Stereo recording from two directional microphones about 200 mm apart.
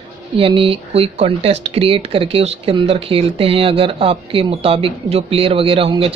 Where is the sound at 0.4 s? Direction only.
25° right (ahead or behind).